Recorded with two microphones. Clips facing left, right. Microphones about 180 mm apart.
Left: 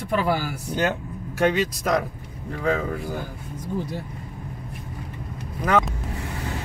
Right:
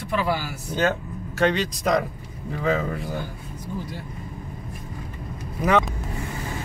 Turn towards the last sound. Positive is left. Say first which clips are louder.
# right 1 dB
turn(degrees=-5)  # may be behind; listen again after turning